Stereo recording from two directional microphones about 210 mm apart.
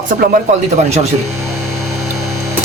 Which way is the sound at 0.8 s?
30° right (ahead or behind).